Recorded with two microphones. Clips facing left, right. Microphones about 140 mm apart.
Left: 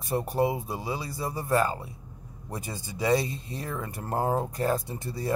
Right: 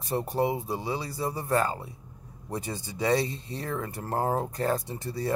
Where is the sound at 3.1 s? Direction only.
10° left (ahead or behind).